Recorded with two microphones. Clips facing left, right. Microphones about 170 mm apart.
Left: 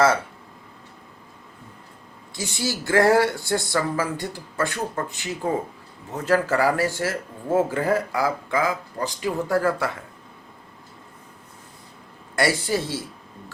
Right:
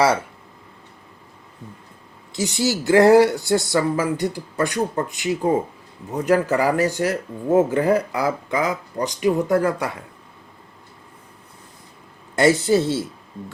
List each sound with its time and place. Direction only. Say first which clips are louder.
2.3 s speech: right 6 dB; 20° right (ahead or behind)
12.4 s speech: right 6 dB; 20° right (ahead or behind)